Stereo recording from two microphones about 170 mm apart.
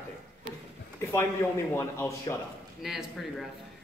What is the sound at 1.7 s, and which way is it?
Speech, 15° left (ahead or behind).